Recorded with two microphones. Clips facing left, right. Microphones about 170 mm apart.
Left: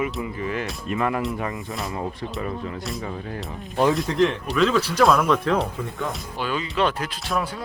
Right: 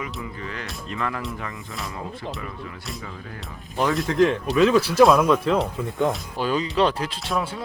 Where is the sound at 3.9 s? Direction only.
Centre (ahead or behind).